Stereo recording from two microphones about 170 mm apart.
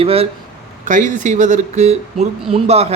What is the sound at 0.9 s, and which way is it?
A man's voice, 50° right (ahead or behind).